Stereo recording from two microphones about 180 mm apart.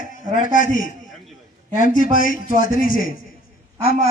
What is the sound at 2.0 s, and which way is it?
A man's voice, 50° left (ahead or behind).